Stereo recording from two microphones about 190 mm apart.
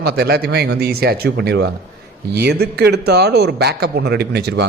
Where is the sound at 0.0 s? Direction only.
55° right (ahead or behind).